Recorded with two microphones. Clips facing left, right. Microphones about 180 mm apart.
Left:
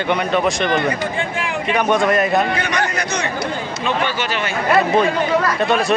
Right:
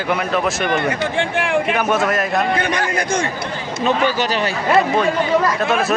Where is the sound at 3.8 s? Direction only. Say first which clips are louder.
Right 4 dB; 40° right (ahead or behind).